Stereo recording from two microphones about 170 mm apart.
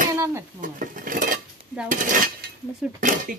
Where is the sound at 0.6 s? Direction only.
50° right (ahead or behind).